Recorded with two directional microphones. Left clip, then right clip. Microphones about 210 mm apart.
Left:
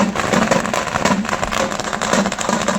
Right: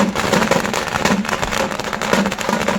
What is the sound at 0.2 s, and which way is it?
Vehicle, 40° right (ahead or behind).